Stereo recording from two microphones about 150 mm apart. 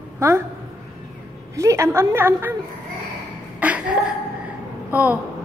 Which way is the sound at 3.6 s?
10° right (ahead or behind).